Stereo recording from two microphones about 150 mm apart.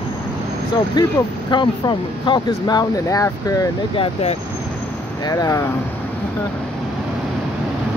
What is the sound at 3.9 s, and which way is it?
Speech, 40° left (ahead or behind).